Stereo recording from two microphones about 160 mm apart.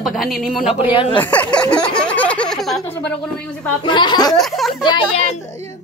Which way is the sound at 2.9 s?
10° left (ahead or behind).